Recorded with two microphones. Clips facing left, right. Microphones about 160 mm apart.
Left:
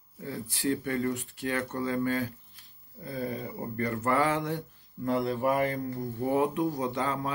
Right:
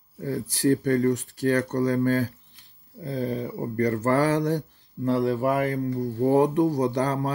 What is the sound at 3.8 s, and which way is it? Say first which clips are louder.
Speech: right 5 dB; 40° right (ahead or behind).